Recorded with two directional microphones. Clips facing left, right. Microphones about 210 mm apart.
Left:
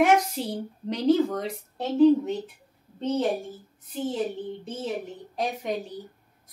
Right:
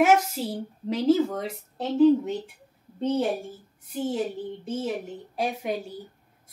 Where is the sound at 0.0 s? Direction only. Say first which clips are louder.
Right 1 dB; 5° right (ahead or behind).